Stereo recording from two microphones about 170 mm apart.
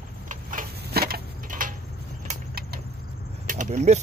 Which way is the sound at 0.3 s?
50° right (ahead or behind).